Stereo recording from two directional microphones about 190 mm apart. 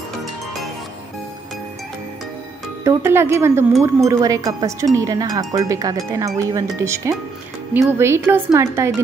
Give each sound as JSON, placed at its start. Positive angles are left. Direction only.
{"t": 2.8, "sound": "speech", "side_deg": -15}